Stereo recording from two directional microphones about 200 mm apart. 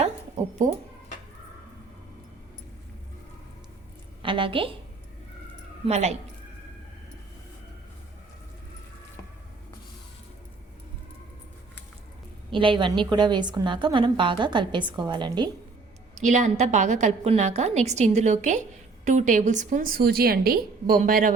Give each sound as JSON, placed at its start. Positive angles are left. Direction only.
{"t": 4.2, "sound": "a woman's voice", "side_deg": -25}
{"t": 5.8, "sound": "a woman's voice", "side_deg": -35}
{"t": 12.5, "sound": "a woman's voice", "side_deg": -25}
{"t": 16.1, "sound": "a woman's voice", "side_deg": -35}